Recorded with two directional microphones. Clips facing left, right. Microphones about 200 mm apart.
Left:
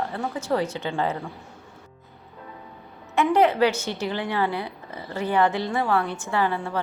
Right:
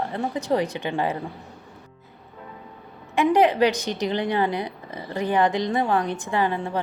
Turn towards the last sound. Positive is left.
turn(degrees=-20)  # may be behind; listen again after turning